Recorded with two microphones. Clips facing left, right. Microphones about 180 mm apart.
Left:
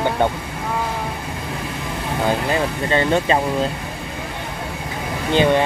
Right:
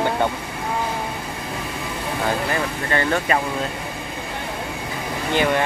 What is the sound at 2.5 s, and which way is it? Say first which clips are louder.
Speech: left 4 dB; 20° left (ahead or behind).